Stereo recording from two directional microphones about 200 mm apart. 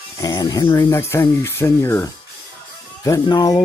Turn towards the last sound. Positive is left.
turn(degrees=20)  # may be behind; listen again after turning